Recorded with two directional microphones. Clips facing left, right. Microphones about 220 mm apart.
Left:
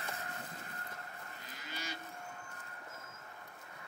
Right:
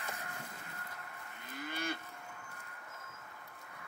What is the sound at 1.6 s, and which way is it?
Livestock, 55° right (ahead or behind).